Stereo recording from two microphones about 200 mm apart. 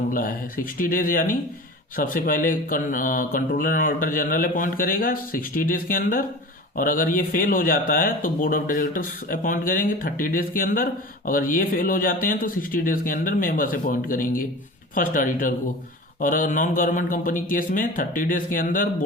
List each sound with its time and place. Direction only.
0.1 s speech: 45° left (ahead or behind)